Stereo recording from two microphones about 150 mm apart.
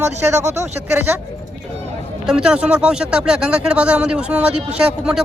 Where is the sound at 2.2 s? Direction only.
5° right (ahead or behind).